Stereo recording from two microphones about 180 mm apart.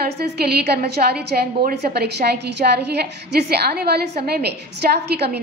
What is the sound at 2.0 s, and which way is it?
A woman's voice, 65° right (ahead or behind).